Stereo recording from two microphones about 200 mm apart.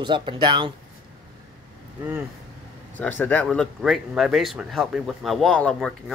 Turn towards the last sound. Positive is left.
turn(degrees=5)  # may be behind; listen again after turning